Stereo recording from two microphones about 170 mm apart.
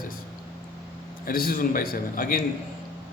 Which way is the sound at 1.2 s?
60° left (ahead or behind).